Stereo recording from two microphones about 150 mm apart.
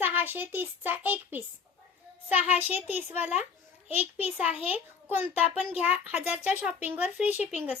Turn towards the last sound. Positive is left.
turn(degrees=-10)  # may be behind; listen again after turning